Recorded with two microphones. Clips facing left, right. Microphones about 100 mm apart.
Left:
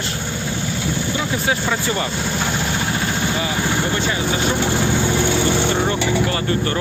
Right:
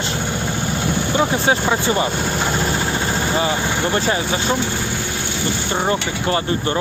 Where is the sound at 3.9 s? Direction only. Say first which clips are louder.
Right 3 dB; 35° right (ahead or behind).